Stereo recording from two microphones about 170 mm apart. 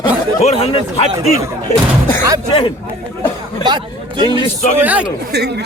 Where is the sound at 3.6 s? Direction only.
25° right (ahead or behind).